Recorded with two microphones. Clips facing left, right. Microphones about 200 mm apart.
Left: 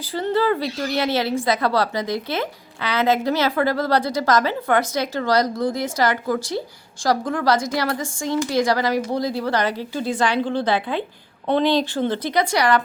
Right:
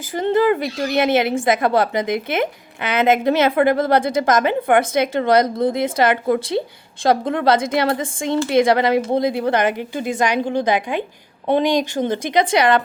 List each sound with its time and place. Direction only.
0.2 s a woman's voice: 20° right (ahead or behind)